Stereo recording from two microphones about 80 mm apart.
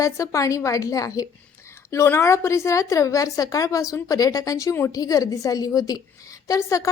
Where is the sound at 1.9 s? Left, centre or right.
Left.